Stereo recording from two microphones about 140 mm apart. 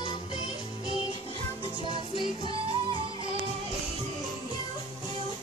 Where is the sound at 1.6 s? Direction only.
40° right (ahead or behind).